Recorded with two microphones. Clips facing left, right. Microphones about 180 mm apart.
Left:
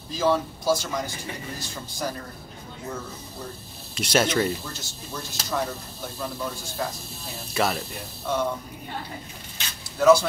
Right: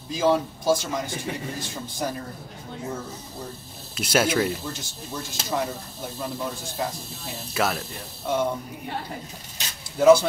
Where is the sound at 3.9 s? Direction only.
5° right (ahead or behind).